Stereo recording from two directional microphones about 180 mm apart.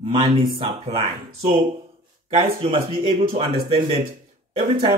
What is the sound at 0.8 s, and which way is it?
Speech, 35° right (ahead or behind).